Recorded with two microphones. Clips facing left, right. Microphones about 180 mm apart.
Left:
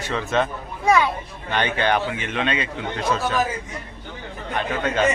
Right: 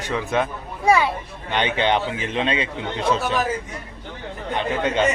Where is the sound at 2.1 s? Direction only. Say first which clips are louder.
Right 1 dB; 30° right (ahead or behind).